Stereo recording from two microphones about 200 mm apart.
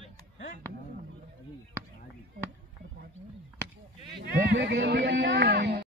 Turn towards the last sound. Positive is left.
turn(degrees=-60)  # may be behind; listen again after turning